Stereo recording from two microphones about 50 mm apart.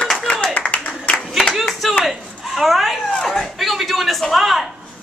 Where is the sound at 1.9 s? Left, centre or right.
Centre.